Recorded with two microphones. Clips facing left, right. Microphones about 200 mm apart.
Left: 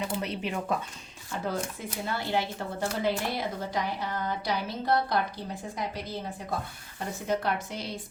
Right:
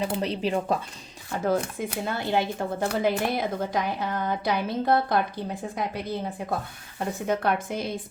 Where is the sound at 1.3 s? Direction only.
55° right (ahead or behind).